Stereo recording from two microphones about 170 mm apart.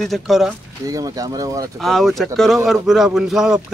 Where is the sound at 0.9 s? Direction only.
20° right (ahead or behind).